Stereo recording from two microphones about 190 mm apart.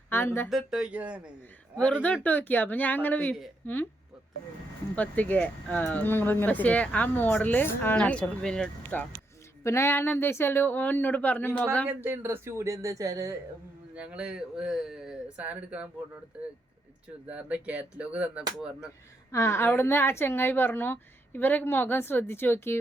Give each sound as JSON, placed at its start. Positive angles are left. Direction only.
{"t": 0.1, "sound": "speech", "side_deg": 10}
{"t": 0.5, "sound": "speech", "side_deg": -5}
{"t": 1.7, "sound": "speech", "side_deg": 5}
{"t": 4.9, "sound": "speech", "side_deg": 10}
{"t": 11.9, "sound": "speech", "side_deg": -10}
{"t": 13.9, "sound": "speech", "side_deg": -5}
{"t": 17.2, "sound": "speech", "side_deg": -5}
{"t": 19.3, "sound": "speech", "side_deg": 15}